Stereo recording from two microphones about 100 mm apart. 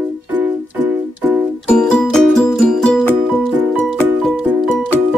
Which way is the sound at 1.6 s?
10° left (ahead or behind).